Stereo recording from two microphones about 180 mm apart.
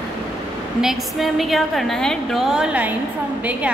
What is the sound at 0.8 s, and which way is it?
A woman's voice, centre (ahead or behind).